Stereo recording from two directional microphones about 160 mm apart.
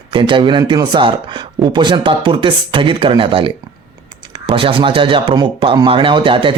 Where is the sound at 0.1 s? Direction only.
30° right (ahead or behind).